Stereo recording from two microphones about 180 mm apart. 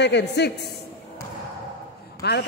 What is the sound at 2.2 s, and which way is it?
Speech, 65° left (ahead or behind).